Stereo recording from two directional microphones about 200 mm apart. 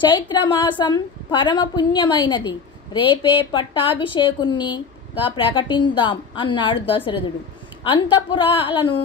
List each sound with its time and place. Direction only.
0.0 s a woman's voice: 25° left (ahead or behind)